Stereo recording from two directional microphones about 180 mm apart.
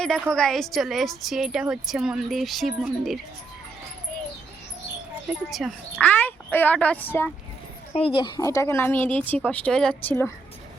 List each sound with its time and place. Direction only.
0.0 s speech: 5° left (ahead or behind)
5.3 s speech: centre (ahead or behind)
7.9 s speech: 30° left (ahead or behind); by 10.3 s 10° left (ahead or behind)